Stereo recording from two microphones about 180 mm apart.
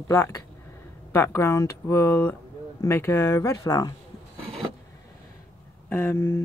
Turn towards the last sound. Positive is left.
turn(degrees=15)  # may be behind; listen again after turning